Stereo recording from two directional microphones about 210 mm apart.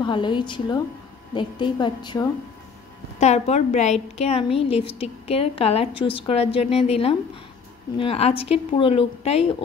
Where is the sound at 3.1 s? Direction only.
30° left (ahead or behind).